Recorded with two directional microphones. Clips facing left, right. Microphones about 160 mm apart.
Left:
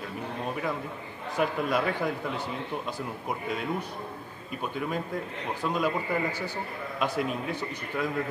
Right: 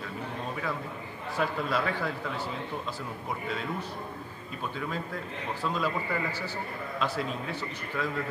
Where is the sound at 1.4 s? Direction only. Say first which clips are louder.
Left 3 dB; 15° left (ahead or behind).